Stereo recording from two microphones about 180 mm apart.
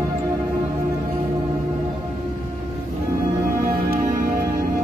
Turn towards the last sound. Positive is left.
turn(degrees=-50)  # may be behind; listen again after turning